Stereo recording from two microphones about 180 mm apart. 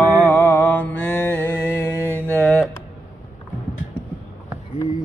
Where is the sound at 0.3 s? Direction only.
10° left (ahead or behind).